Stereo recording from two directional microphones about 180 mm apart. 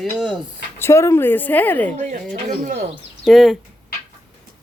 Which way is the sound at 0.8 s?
15° left (ahead or behind).